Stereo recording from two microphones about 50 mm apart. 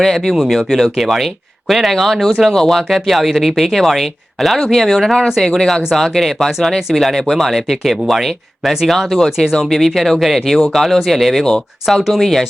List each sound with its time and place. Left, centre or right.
0.0 s speech: centre
0.3 s speech: centre